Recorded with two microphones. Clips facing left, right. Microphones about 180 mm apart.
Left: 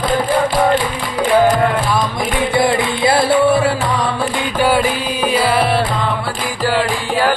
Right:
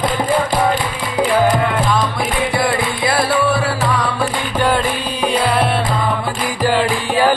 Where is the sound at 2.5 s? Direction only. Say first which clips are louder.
Left 3 dB; 25° left (ahead or behind).